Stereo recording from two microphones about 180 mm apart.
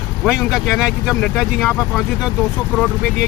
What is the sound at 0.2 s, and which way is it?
Speech, 5° right (ahead or behind).